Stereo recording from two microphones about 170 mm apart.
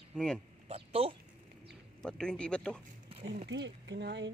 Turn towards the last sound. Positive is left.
turn(degrees=-85)